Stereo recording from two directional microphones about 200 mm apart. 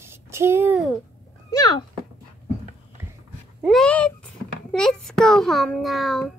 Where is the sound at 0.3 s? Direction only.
10° right (ahead or behind).